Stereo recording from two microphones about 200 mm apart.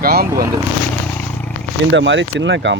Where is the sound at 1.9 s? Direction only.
65° right (ahead or behind).